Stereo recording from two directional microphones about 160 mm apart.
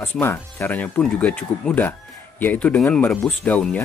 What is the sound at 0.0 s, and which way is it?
Speech, 15° left (ahead or behind).